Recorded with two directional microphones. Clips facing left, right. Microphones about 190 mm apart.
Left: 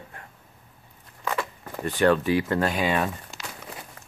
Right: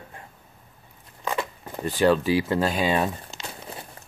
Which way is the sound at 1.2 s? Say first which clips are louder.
Right 1 dB; 20° right (ahead or behind).